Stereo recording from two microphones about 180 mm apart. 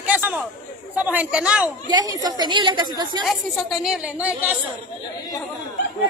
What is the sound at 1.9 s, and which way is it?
A woman's voice, 20° right (ahead or behind).